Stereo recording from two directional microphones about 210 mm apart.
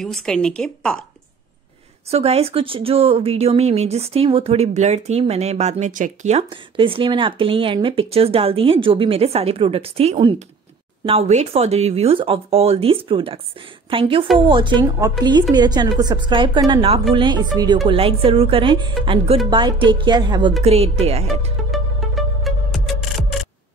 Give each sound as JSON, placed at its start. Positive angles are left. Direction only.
{"t": 0.0, "sound": "a woman's voice", "side_deg": 0}
{"t": 2.0, "sound": "speech", "side_deg": -30}
{"t": 21.6, "sound": "music", "side_deg": 0}